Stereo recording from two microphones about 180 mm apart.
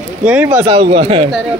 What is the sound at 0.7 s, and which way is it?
Speech, 35° right (ahead or behind).